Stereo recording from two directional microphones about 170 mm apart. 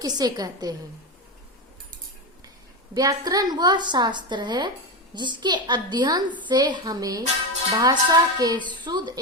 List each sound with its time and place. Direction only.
0.0 s a woman's voice: 25° right (ahead or behind)
2.9 s a woman's voice: 20° right (ahead or behind)